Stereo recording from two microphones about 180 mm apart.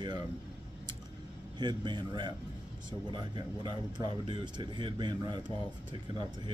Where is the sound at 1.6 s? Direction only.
25° right (ahead or behind).